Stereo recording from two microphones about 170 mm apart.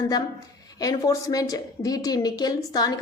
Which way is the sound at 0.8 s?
20° left (ahead or behind).